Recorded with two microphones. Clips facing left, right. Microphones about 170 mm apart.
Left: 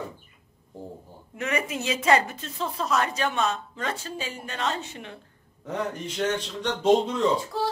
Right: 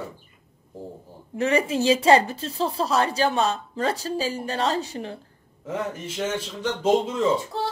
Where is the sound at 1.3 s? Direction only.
30° right (ahead or behind).